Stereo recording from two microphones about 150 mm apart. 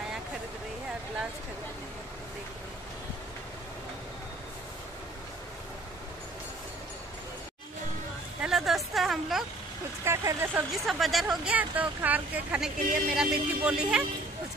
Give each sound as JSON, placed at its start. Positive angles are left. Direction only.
{"t": 8.4, "sound": "a sound", "side_deg": 0}
{"t": 10.0, "sound": "speech", "side_deg": -20}
{"t": 10.7, "sound": "speech", "side_deg": 0}